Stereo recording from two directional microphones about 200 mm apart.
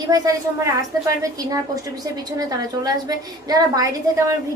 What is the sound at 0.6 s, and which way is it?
A woman's voice, 15° right (ahead or behind).